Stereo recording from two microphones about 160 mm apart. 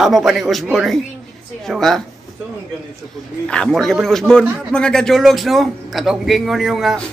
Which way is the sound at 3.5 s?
5° left (ahead or behind).